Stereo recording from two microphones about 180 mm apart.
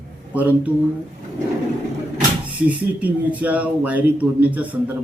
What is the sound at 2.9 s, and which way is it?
Speech, 10° right (ahead or behind).